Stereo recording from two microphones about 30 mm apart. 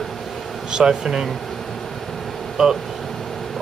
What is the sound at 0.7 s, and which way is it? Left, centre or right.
Speech, right.